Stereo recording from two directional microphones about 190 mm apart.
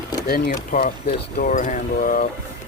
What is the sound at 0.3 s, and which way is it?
Speech, 50° left (ahead or behind).